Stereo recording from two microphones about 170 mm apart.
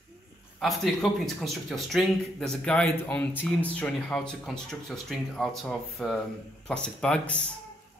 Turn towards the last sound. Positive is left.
turn(degrees=5)  # may be behind; listen again after turning